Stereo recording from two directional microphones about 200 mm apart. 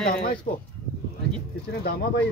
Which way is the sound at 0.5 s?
50° left (ahead or behind).